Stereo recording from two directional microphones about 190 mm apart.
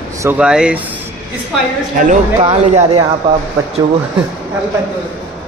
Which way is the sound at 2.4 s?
30° right (ahead or behind).